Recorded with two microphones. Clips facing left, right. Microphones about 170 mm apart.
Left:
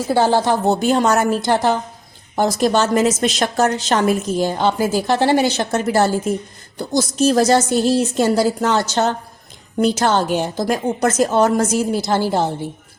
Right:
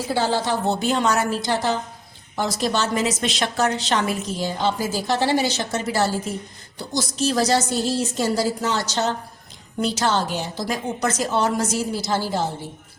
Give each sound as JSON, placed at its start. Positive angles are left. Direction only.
{"t": 0.1, "sound": "a woman's voice", "side_deg": 50}